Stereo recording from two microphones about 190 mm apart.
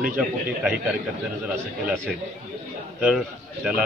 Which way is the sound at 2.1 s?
Centre (ahead or behind).